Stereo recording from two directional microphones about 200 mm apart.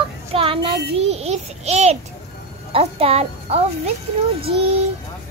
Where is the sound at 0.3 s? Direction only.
25° right (ahead or behind).